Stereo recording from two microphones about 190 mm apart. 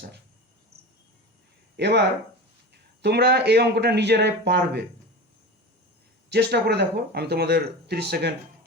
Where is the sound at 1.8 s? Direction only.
65° right (ahead or behind).